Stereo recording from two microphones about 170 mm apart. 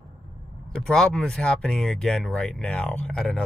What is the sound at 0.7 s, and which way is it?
Speech, 5° left (ahead or behind).